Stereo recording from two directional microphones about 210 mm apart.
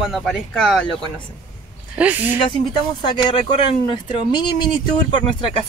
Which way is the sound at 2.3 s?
20° left (ahead or behind).